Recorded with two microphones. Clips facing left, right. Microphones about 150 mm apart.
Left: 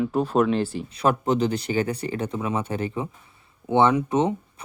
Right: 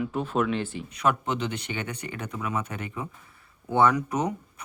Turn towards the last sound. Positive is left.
turn(degrees=25)  # may be behind; listen again after turning